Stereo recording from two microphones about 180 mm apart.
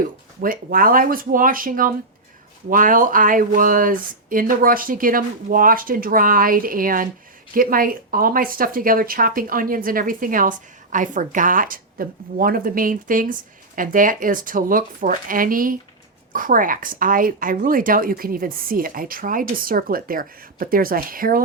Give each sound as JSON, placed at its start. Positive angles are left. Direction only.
{"t": 0.4, "sound": "speech", "side_deg": -55}